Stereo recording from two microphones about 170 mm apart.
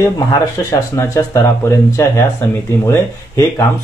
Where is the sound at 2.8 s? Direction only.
15° left (ahead or behind).